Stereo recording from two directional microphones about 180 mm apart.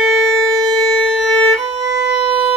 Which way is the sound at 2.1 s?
5° right (ahead or behind).